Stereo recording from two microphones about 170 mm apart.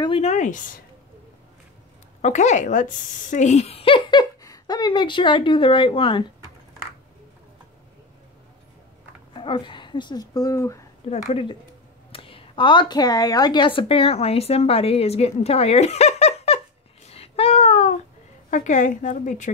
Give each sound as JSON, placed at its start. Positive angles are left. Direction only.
{"t": 0.0, "sound": "speech", "side_deg": 35}
{"t": 2.2, "sound": "speech", "side_deg": 45}
{"t": 9.3, "sound": "speech", "side_deg": 30}
{"t": 12.1, "sound": "speech", "side_deg": 30}
{"t": 17.1, "sound": "a sound", "side_deg": 35}
{"t": 18.5, "sound": "a woman's voice", "side_deg": 45}